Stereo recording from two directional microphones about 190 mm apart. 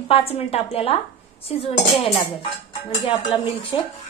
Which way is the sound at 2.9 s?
25° left (ahead or behind).